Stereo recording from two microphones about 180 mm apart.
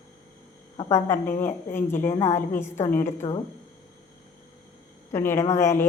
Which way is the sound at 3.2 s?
25° left (ahead or behind).